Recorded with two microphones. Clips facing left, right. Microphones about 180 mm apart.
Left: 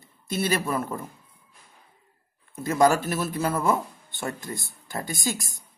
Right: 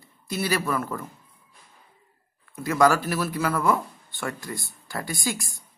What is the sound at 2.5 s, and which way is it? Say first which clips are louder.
Speech: even; 25° left (ahead or behind).